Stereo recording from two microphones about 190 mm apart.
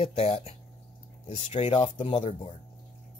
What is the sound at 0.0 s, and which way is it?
Speech, 30° left (ahead or behind).